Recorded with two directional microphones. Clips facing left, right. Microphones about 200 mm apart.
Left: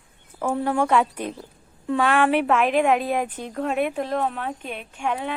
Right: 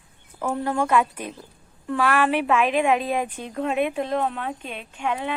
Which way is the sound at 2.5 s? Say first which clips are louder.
Left 1 dB; 15° right (ahead or behind).